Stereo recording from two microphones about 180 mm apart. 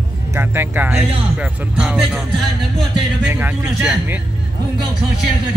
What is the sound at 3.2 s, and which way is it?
Speech, 10° right (ahead or behind).